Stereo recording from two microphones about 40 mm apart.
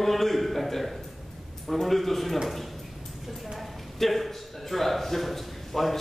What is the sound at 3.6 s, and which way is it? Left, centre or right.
A man's voice, centre.